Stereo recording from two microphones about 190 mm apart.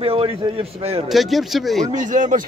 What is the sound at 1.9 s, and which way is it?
Speech, 40° right (ahead or behind).